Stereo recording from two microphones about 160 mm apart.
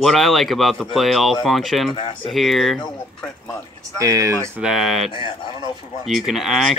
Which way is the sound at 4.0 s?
20° right (ahead or behind).